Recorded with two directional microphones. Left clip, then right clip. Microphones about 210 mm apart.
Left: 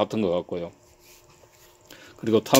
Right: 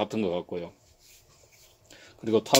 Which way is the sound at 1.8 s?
20° left (ahead or behind).